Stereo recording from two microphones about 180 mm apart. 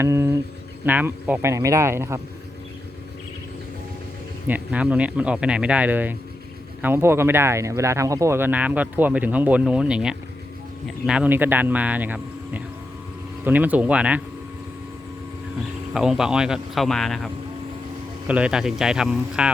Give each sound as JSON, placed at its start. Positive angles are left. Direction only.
{"t": 0.0, "sound": "speech", "side_deg": -15}
{"t": 4.4, "sound": "speech", "side_deg": -10}
{"t": 15.9, "sound": "speech", "side_deg": -5}